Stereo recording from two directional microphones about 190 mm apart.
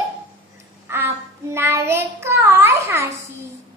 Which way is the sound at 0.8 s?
10° right (ahead or behind).